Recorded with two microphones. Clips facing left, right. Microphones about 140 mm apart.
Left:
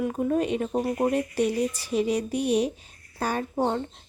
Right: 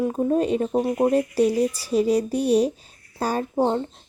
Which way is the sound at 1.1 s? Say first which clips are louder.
Right 5 dB; 35° right (ahead or behind).